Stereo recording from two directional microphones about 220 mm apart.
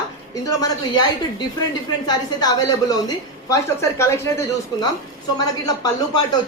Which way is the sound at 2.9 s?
15° left (ahead or behind).